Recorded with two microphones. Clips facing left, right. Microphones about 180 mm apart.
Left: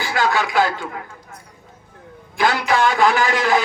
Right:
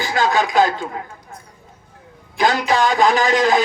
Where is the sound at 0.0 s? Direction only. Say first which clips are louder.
Right 2 dB; 20° right (ahead or behind).